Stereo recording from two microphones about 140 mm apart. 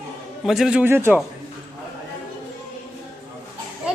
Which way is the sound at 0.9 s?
15° right (ahead or behind).